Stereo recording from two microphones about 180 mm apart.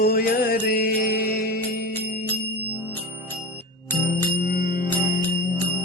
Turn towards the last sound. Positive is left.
turn(degrees=55)  # may be behind; listen again after turning